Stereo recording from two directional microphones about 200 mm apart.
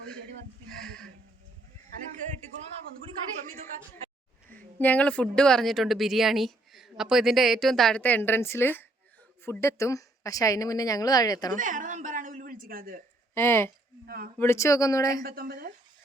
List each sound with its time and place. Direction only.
0.7 s a woman's voice: 5° left (ahead or behind)
2.1 s speech: 35° right (ahead or behind)
4.4 s a woman's voice: 10° left (ahead or behind)
11.5 s a woman's voice: 40° right (ahead or behind)
13.3 s a woman's voice: 10° left (ahead or behind)
15.2 s speech: 45° right (ahead or behind)